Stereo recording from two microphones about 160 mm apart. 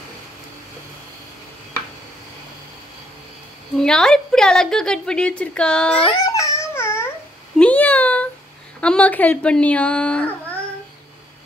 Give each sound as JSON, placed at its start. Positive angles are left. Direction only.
{"t": 3.7, "sound": "a woman's voice", "side_deg": 5}
{"t": 5.9, "sound": "babbling", "side_deg": 30}
{"t": 7.5, "sound": "meow", "side_deg": 10}
{"t": 8.8, "sound": "a woman's voice", "side_deg": 10}